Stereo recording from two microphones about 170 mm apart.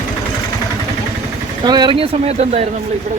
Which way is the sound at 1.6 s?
25° right (ahead or behind).